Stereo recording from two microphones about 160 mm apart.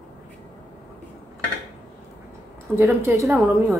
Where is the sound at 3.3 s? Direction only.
5° right (ahead or behind).